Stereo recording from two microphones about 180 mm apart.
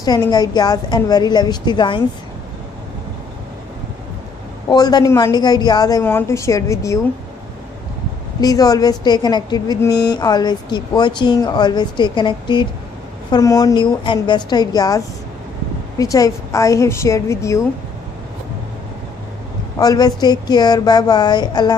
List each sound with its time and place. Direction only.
0.0 s a woman's voice: 20° left (ahead or behind)
4.6 s a woman's voice: 20° left (ahead or behind)
8.4 s a woman's voice: 20° left (ahead or behind)
19.8 s a woman's voice: 20° left (ahead or behind)